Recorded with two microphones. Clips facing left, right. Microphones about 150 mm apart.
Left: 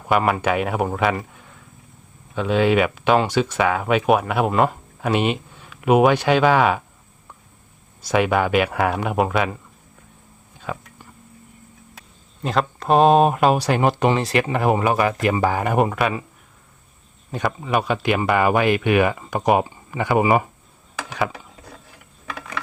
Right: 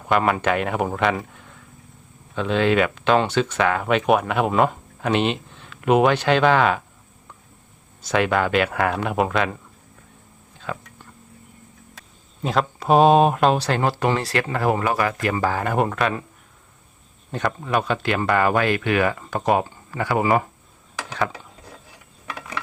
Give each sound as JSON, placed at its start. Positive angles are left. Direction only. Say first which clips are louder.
{"t": 0.1, "sound": "speech", "louder": "left 1 dB", "side_deg": 0}
{"t": 8.0, "sound": "speech", "louder": "left 1 dB", "side_deg": 10}
{"t": 10.6, "sound": "whispering", "louder": "left 1 dB", "side_deg": 10}
{"t": 12.4, "sound": "speech", "louder": "even", "side_deg": 0}
{"t": 17.3, "sound": "speech", "louder": "left 1 dB", "side_deg": 5}